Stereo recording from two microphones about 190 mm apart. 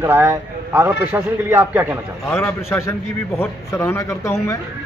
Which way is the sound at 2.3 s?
15° left (ahead or behind).